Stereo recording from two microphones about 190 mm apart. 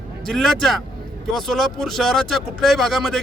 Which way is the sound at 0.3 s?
Centre (ahead or behind).